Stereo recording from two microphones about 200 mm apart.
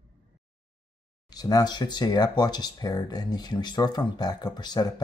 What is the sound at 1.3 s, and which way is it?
Speech, 20° left (ahead or behind).